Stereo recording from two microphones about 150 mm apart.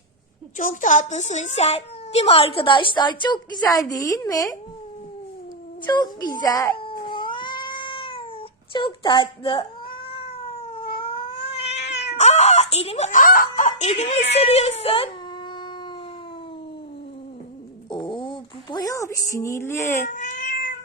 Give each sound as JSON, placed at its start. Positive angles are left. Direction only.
{"t": 0.5, "sound": "a child's voice", "side_deg": 60}
{"t": 5.8, "sound": "a child's voice", "side_deg": 30}
{"t": 6.7, "sound": "cat", "side_deg": 35}
{"t": 8.7, "sound": "a child's voice", "side_deg": 35}
{"t": 10.1, "sound": "cat", "side_deg": 35}
{"t": 17.9, "sound": "a sound", "side_deg": 35}
{"t": 20.0, "sound": "cat", "side_deg": 55}